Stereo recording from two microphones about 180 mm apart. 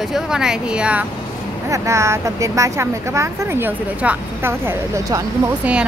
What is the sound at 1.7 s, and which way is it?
Speech, 15° right (ahead or behind).